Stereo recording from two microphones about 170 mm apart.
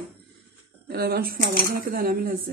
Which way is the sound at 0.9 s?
65° right (ahead or behind).